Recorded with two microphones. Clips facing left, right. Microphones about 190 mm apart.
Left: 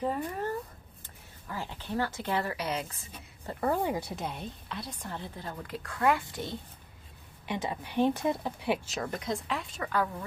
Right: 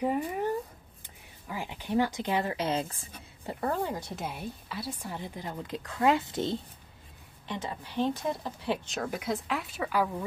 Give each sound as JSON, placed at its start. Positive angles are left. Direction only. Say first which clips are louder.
{"t": 0.0, "sound": "a woman's voice", "louder": "right 3 dB", "side_deg": -15}
{"t": 3.7, "sound": "speech", "louder": "left 3 dB", "side_deg": 15}
{"t": 4.1, "sound": "a woman's voice", "louder": "even", "side_deg": -5}
{"t": 7.4, "sound": "speech", "louder": "left 3 dB", "side_deg": 15}
{"t": 8.9, "sound": "speech", "louder": "right 1 dB", "side_deg": -5}